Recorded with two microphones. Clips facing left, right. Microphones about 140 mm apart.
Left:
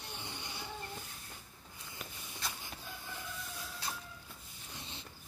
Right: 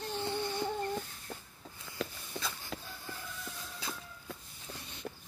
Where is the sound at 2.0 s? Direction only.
90° right.